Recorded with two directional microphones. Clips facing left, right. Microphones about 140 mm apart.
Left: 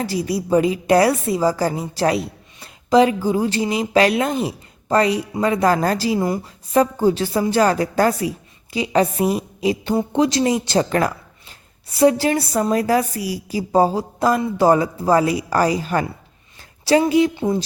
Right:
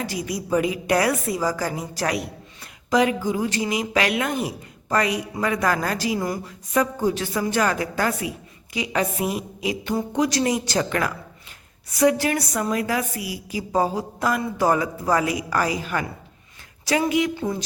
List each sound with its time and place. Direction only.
0.0 s a woman's voice: 30° left (ahead or behind)